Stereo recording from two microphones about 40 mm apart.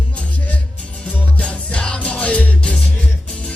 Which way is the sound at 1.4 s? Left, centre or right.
Left.